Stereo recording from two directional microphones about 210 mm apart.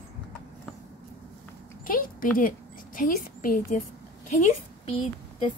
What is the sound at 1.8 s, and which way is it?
A woman's voice, 40° left (ahead or behind).